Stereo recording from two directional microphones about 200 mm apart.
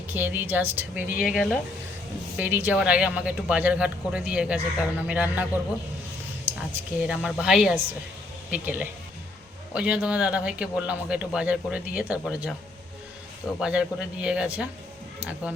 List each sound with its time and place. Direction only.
0.1 s speech: 10° right (ahead or behind)
1.1 s speech: 45° left (ahead or behind)
2.4 s speech: 10° right (ahead or behind)
6.6 s a man's voice: 5° right (ahead or behind)
13.6 s a man's voice: 5° right (ahead or behind)